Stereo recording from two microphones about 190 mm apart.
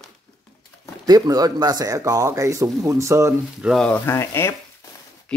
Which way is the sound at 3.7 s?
5° left (ahead or behind).